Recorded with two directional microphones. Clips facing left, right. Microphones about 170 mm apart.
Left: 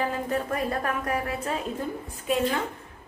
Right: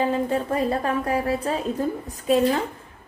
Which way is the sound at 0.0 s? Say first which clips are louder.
Right 5 dB; 30° right (ahead or behind).